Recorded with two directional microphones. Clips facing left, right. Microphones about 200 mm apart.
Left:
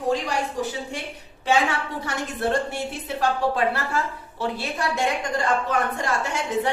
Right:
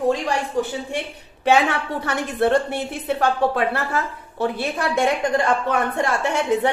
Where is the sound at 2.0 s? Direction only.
60° right (ahead or behind).